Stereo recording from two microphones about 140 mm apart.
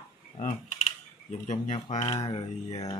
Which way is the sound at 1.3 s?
60° left (ahead or behind).